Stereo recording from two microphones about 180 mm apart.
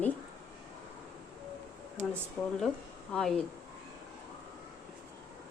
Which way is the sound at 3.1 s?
5° left (ahead or behind).